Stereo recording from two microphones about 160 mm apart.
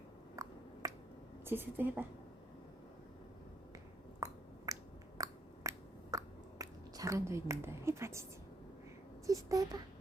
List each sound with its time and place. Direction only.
0.3 s finger snapping: 20° right (ahead or behind)
1.5 s a woman's voice: 10° right (ahead or behind)
4.2 s finger snapping: 20° right (ahead or behind)
9.2 s speech: 20° right (ahead or behind)